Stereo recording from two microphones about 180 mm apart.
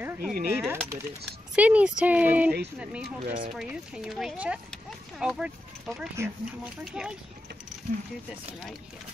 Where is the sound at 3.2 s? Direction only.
50° right (ahead or behind).